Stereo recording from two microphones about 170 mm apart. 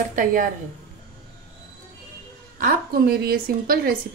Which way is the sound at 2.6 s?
65° right (ahead or behind).